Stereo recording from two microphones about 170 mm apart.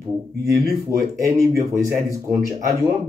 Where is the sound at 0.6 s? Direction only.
20° right (ahead or behind).